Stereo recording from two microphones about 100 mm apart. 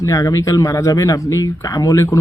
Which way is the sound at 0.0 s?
35° left (ahead or behind).